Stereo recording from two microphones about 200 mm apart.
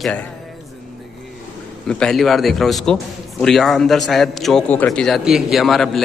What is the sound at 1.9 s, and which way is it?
A man's voice, 5° left (ahead or behind).